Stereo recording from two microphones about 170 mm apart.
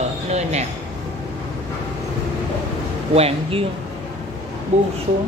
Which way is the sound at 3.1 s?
35° right (ahead or behind).